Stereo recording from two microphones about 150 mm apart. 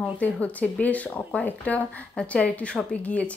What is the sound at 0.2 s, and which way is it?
A woman's voice, 10° left (ahead or behind).